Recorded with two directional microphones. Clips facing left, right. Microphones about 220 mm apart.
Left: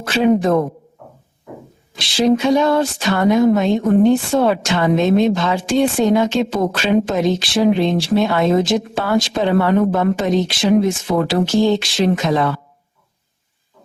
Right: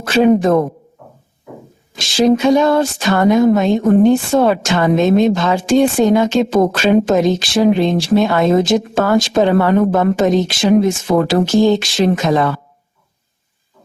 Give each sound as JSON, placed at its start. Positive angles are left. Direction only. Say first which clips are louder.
{"t": 0.0, "sound": "speech", "louder": "right 3 dB", "side_deg": -45}
{"t": 2.0, "sound": "speech", "louder": "right 3 dB", "side_deg": -45}